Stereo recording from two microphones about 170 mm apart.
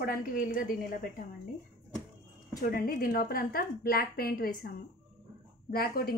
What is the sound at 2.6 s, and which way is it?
A woman's voice, 60° left (ahead or behind).